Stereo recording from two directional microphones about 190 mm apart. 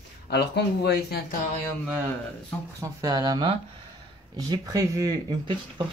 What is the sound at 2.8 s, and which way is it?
Speech, 20° right (ahead or behind).